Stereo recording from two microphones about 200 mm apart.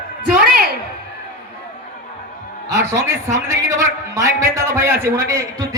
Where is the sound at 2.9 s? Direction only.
15° right (ahead or behind).